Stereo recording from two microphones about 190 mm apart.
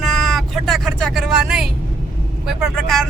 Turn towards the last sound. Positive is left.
turn(degrees=0)  # may be behind; listen again after turning